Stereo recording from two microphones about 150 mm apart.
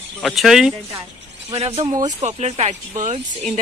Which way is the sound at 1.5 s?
40° right (ahead or behind).